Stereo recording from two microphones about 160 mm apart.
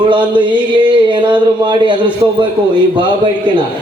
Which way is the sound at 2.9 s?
30° right (ahead or behind).